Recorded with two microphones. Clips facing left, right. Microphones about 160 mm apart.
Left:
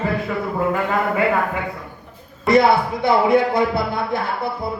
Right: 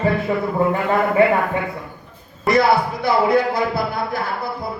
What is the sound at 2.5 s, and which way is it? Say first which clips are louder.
Speech: left 1 dB; 25° left (ahead or behind).